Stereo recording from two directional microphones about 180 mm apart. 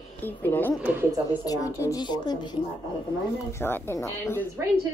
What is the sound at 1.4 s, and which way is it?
Speech, 20° left (ahead or behind).